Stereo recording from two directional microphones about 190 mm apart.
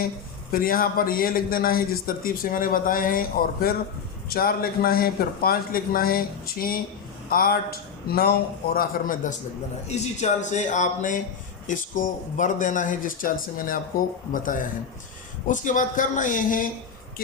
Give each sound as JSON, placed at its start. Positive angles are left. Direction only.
{"t": 0.5, "sound": "a man's voice", "side_deg": 50}
{"t": 9.9, "sound": "a man's voice", "side_deg": 35}
{"t": 14.4, "sound": "a man's voice", "side_deg": 45}